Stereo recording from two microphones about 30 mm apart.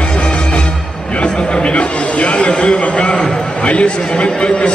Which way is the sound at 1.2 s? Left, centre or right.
Left.